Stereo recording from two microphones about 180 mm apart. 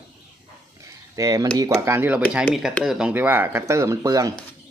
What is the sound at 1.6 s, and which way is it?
Speech, 15° right (ahead or behind).